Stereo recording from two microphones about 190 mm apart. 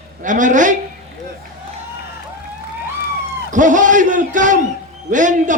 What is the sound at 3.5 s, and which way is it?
A man's voice, 40° right (ahead or behind).